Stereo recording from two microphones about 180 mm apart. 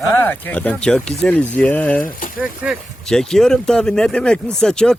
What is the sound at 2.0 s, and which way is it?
Speech, 50° left (ahead or behind).